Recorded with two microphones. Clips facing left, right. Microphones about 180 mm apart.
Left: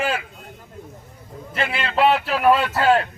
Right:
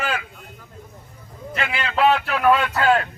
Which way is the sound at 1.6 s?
30° left (ahead or behind).